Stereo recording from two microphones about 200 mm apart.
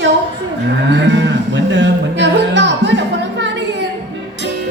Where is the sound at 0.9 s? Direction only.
65° right (ahead or behind).